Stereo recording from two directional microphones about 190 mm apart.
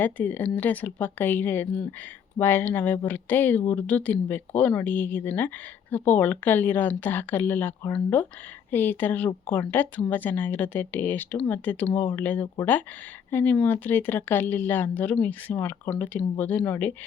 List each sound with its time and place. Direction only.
0.0 s speech: 10° left (ahead or behind)